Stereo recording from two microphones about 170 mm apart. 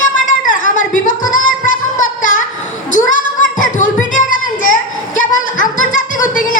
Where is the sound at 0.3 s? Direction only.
50° left (ahead or behind).